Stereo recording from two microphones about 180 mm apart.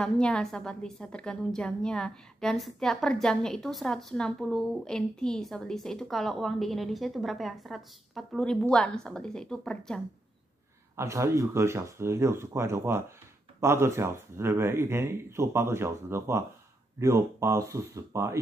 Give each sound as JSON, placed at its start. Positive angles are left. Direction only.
{"t": 0.0, "sound": "a woman's voice", "side_deg": 5}
{"t": 11.0, "sound": "speech", "side_deg": -15}